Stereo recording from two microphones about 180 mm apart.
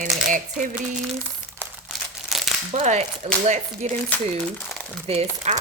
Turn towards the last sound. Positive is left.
turn(degrees=-35)  # may be behind; listen again after turning